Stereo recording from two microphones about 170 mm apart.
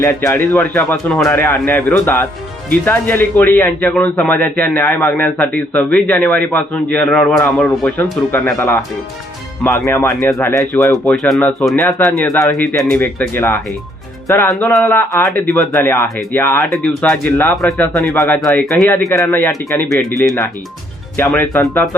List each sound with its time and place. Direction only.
0.0 s a man's voice: 15° left (ahead or behind)
10.9 s speech: 5° left (ahead or behind)
11.8 s a man's voice: 15° left (ahead or behind)
14.5 s speech: centre (ahead or behind)
14.8 s a man's voice: 15° left (ahead or behind)
16.7 s a man's voice: 5° left (ahead or behind)
18.7 s a man's voice: 15° left (ahead or behind)
21.2 s a man's voice: 10° left (ahead or behind)